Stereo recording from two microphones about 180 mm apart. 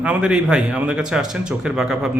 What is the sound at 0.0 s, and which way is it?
Speech, 5° right (ahead or behind).